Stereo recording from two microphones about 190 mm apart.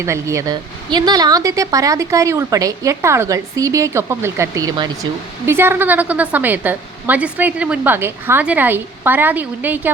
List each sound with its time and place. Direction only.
0.0 s a woman's voice: 15° right (ahead or behind)